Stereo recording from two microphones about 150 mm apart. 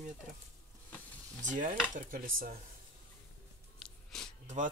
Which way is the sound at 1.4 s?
55° right (ahead or behind).